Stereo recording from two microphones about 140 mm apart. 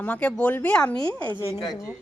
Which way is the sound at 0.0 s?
10° left (ahead or behind).